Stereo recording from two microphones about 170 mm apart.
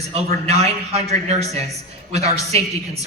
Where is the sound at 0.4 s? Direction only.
40° right (ahead or behind).